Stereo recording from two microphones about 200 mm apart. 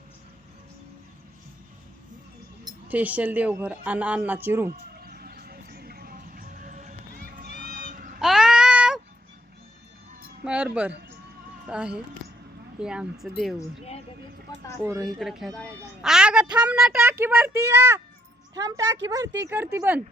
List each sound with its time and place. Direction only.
2.9 s a man's voice: 5° right (ahead or behind)
4.9 s music: 50° right (ahead or behind)
8.2 s child singing: centre (ahead or behind)
10.4 s a sound: 5° right (ahead or behind)
11.6 s a woman's voice: 5° right (ahead or behind)
14.5 s speech: 20° left (ahead or behind)
15.0 s a woman's voice: centre (ahead or behind)